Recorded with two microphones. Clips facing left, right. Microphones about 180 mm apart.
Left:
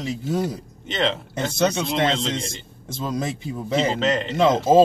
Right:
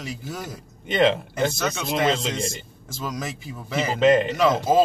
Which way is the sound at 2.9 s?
25° left (ahead or behind).